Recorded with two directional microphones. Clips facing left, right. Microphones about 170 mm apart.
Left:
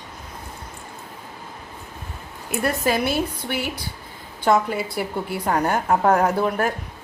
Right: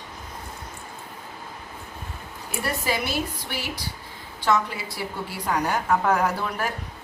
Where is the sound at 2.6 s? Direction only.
55° left (ahead or behind).